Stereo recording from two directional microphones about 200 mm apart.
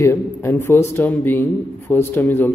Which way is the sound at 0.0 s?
15° left (ahead or behind).